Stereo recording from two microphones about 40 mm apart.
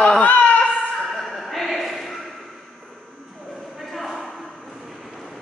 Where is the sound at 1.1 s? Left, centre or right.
Centre.